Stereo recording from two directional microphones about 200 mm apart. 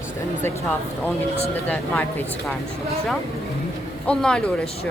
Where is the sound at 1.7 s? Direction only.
10° left (ahead or behind).